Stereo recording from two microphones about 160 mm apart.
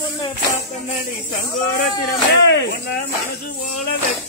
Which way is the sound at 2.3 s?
90° left.